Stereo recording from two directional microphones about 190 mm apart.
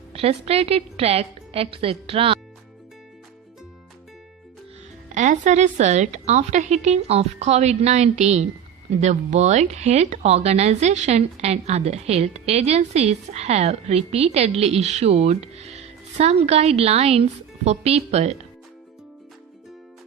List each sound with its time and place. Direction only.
0.1 s speech: 30° right (ahead or behind)
5.1 s speech: 40° right (ahead or behind)